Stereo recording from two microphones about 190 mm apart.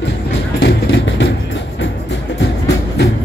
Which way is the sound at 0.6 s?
65° left (ahead or behind).